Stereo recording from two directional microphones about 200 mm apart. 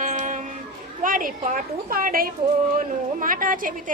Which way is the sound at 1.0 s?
45° right (ahead or behind).